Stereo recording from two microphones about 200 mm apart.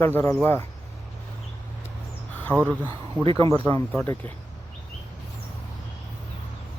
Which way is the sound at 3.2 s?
20° right (ahead or behind).